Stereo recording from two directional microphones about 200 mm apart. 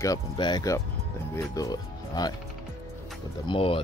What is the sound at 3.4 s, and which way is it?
Speech, 25° left (ahead or behind).